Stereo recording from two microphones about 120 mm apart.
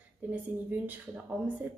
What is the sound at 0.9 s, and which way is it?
Speech, 15° right (ahead or behind).